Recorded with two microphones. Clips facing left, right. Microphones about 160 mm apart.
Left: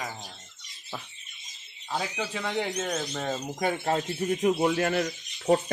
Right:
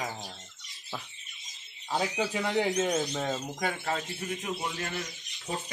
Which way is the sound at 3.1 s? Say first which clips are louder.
Left 1 dB; 5° left (ahead or behind).